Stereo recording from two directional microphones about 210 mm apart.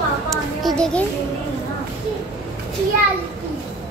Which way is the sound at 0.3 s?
Centre (ahead or behind).